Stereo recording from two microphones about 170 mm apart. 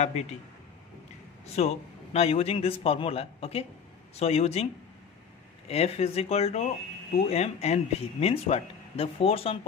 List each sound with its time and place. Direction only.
0.0 s speech: 40° left (ahead or behind)
1.4 s speech: 40° left (ahead or behind)
5.7 s speech: 35° left (ahead or behind)